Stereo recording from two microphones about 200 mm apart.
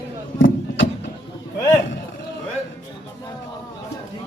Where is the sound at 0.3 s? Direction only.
70° left (ahead or behind).